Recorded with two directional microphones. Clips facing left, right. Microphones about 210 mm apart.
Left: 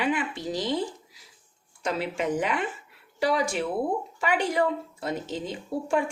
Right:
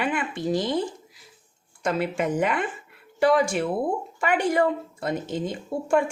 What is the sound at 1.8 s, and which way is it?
Speech, 50° right (ahead or behind).